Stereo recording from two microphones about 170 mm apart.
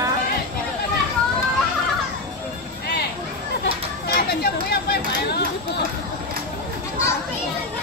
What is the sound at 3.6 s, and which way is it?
Chatter, 70° left (ahead or behind).